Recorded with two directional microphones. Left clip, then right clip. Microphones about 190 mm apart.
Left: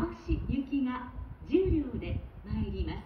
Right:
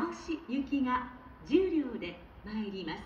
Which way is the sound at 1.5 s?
20° right (ahead or behind).